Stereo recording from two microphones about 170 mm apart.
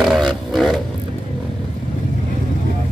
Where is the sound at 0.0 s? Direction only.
Centre (ahead or behind).